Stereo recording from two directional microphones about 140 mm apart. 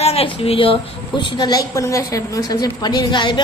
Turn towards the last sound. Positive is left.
turn(degrees=35)  # may be behind; listen again after turning